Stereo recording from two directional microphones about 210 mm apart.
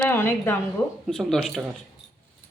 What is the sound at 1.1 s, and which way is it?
Speech, centre (ahead or behind).